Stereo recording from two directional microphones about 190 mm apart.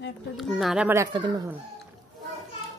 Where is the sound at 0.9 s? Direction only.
20° right (ahead or behind).